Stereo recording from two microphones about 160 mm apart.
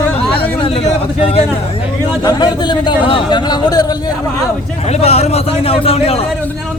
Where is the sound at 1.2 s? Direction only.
40° left (ahead or behind).